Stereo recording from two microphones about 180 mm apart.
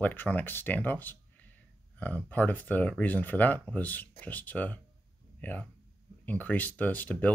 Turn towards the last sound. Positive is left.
turn(degrees=10)  # may be behind; listen again after turning